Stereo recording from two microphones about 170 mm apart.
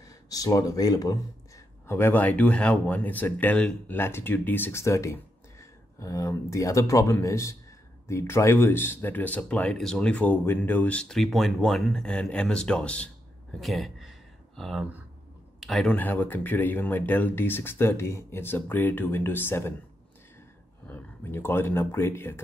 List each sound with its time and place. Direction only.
0.0 s speech: 20° left (ahead or behind)
13.6 s a sound: centre (ahead or behind)
15.6 s speech: centre (ahead or behind)
20.8 s speech: 10° left (ahead or behind)